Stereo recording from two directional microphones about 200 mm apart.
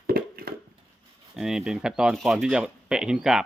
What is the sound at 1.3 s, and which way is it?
Speech, centre (ahead or behind).